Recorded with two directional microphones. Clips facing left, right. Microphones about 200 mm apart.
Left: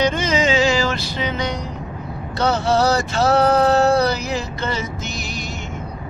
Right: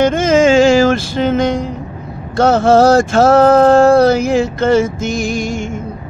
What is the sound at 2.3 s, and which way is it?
Speech, 50° right (ahead or behind).